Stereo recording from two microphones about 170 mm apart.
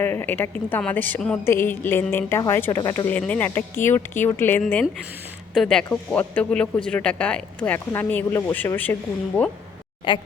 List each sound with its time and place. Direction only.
0.0 s speech: 10° left (ahead or behind)
10.1 s a woman's voice: 30° left (ahead or behind)